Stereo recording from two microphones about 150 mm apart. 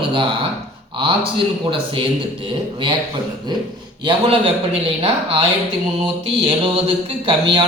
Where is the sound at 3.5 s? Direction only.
30° right (ahead or behind).